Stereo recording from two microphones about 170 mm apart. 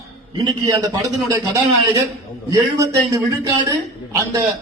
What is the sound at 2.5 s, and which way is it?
A man's voice, 20° right (ahead or behind).